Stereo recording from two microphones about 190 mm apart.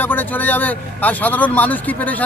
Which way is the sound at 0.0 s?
10° left (ahead or behind).